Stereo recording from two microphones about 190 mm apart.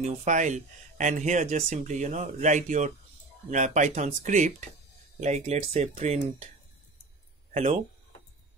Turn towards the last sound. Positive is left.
turn(degrees=-35)  # may be behind; listen again after turning